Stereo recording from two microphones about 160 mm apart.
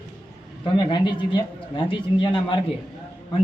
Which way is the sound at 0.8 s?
30° left (ahead or behind).